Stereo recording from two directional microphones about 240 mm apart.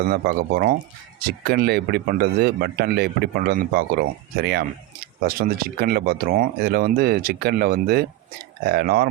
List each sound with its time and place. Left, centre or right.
0.1 s speech: right